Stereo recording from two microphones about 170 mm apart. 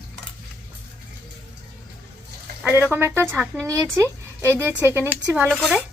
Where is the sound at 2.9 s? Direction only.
15° right (ahead or behind).